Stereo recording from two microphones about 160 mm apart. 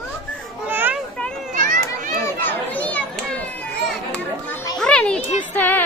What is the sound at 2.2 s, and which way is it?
Children playing, 10° left (ahead or behind).